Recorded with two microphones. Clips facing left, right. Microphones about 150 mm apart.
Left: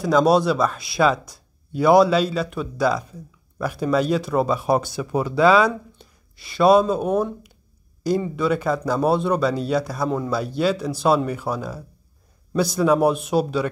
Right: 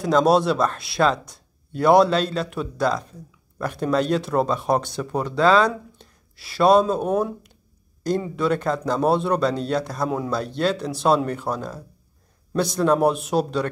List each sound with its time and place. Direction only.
0.0 s speech: centre (ahead or behind)